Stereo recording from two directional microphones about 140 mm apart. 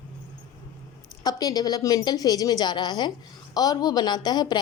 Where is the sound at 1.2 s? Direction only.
30° left (ahead or behind).